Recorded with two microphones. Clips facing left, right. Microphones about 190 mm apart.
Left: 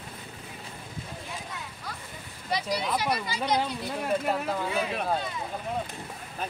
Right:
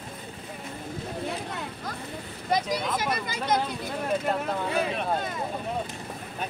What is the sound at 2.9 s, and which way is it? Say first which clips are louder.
Speech: even; 50° right (ahead or behind).